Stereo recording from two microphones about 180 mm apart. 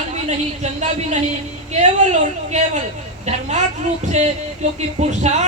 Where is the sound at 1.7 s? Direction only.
40° right (ahead or behind).